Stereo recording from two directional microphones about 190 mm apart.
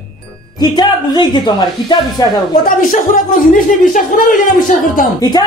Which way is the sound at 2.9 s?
45° left (ahead or behind).